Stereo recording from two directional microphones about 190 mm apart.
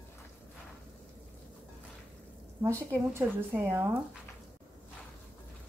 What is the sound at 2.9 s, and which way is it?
A woman's voice, 10° right (ahead or behind).